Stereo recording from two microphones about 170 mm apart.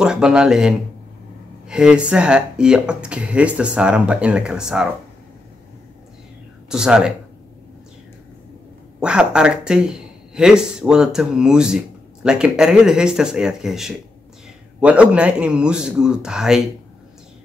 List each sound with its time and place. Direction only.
0.0 s speech: 5° right (ahead or behind)
6.7 s speech: 5° right (ahead or behind)
9.0 s speech: 5° right (ahead or behind)